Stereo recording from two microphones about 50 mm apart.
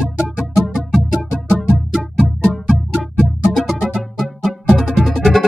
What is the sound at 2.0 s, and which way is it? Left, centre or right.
Music, centre.